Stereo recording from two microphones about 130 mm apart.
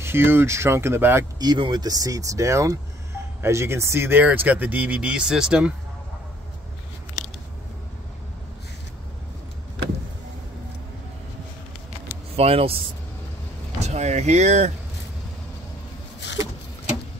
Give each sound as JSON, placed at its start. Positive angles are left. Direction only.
{"t": 0.0, "sound": "speech", "side_deg": -20}
{"t": 1.4, "sound": "speech", "side_deg": -35}
{"t": 12.4, "sound": "speech", "side_deg": -50}
{"t": 13.7, "sound": "speech", "side_deg": -60}